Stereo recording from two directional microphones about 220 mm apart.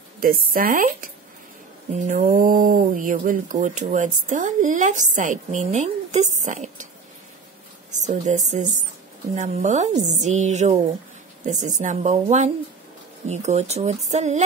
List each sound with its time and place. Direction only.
0.2 s speech: 40° right (ahead or behind)
7.9 s a woman's voice: 35° right (ahead or behind)